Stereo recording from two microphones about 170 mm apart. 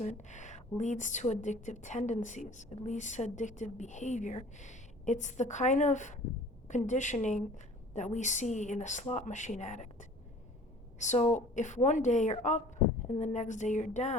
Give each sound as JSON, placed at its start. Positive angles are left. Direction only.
{"t": 0.0, "sound": "a woman's voice", "side_deg": 45}